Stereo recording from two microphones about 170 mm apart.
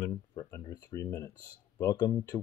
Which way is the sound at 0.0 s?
20° left (ahead or behind).